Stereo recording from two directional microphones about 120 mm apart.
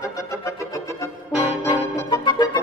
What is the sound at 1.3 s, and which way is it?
Music, 10° right (ahead or behind).